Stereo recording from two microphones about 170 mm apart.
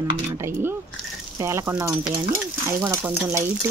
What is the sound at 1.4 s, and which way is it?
Speech, 15° right (ahead or behind).